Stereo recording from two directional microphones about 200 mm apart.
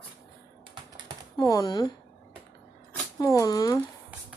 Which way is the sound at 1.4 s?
20° left (ahead or behind).